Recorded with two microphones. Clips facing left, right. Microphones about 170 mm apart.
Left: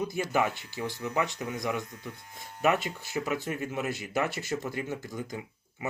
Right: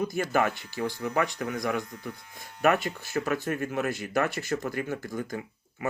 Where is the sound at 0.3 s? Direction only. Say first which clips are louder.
Right 2 dB; 15° left (ahead or behind).